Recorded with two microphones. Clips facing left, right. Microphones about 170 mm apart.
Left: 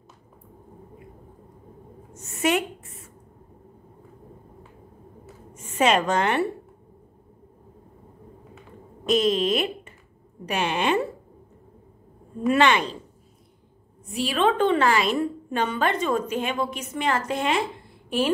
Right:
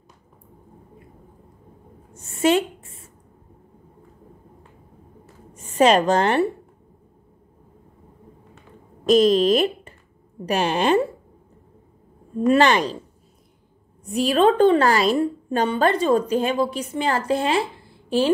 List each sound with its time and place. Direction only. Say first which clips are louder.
2.1 s a sound: right 5 dB; 30° right (ahead or behind)
5.5 s a woman's voice: right 5 dB; 35° right (ahead or behind)
9.0 s a woman's voice: right 6 dB; 35° right (ahead or behind)
12.5 s a woman's voice: right 2 dB; 40° right (ahead or behind)
14.1 s a woman's voice: right 5 dB; 40° right (ahead or behind)